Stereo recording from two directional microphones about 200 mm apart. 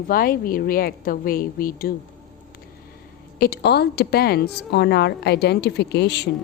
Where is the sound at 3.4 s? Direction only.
55° left (ahead or behind).